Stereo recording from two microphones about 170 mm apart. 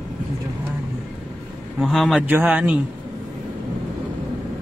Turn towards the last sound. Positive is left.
turn(degrees=-10)  # may be behind; listen again after turning